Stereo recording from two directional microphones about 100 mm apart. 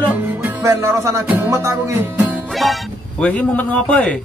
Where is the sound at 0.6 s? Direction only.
30° right (ahead or behind).